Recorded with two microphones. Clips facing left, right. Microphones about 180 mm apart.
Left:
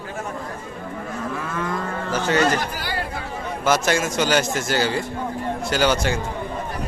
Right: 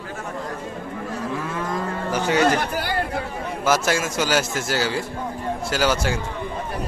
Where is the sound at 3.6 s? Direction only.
5° right (ahead or behind).